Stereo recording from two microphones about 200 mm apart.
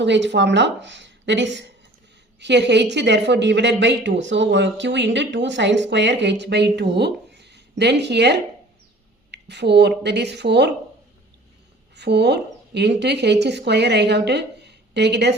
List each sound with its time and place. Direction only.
0.0 s speech: 60° right (ahead or behind)
11.9 s speech: 55° right (ahead or behind)